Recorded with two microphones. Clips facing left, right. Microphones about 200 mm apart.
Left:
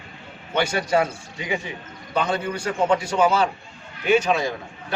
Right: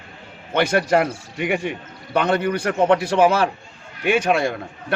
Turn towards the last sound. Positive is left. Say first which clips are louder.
# right 4 dB
turn(degrees=-65)  # may be behind; listen again after turning